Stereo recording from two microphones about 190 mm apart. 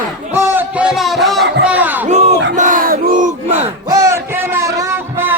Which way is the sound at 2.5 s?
45° right (ahead or behind).